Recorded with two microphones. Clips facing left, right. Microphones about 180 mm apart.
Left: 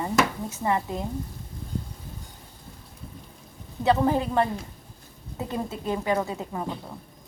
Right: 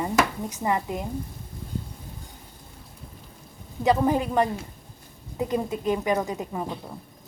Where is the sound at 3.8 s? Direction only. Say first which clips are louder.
Even; 15° right (ahead or behind).